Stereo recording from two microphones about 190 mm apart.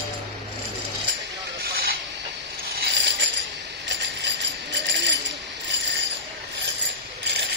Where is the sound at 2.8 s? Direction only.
65° right (ahead or behind).